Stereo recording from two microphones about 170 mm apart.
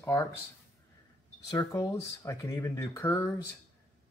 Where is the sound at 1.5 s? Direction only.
20° left (ahead or behind).